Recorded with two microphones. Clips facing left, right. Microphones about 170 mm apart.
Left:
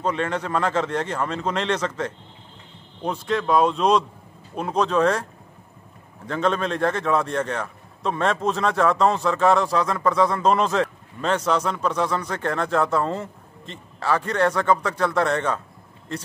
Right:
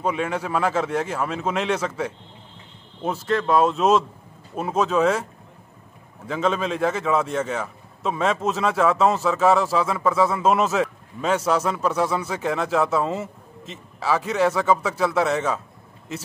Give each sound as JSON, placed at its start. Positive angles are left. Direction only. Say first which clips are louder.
{"t": 0.0, "sound": "a man's voice", "louder": "even", "side_deg": -10}